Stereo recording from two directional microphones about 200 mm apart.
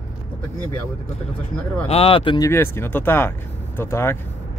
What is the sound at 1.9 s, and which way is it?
Speech, 30° left (ahead or behind).